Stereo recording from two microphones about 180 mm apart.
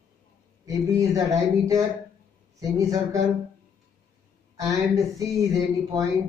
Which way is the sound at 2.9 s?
20° right (ahead or behind).